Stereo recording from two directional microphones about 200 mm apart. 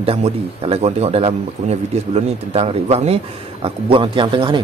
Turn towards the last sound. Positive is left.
turn(degrees=-25)  # may be behind; listen again after turning